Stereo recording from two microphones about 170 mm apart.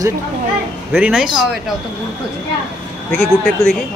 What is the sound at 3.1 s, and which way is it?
Speech, 5° left (ahead or behind).